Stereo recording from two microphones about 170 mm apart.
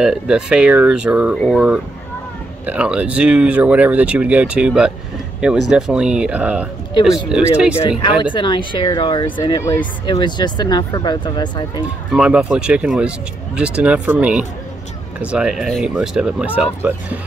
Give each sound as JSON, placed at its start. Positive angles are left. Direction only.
{"t": 0.0, "sound": "speech", "side_deg": -5}
{"t": 8.0, "sound": "speech", "side_deg": 30}
{"t": 12.1, "sound": "speech", "side_deg": -5}